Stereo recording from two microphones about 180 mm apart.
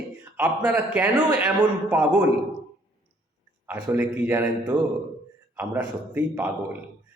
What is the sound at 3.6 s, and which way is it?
A man's voice, 10° right (ahead or behind).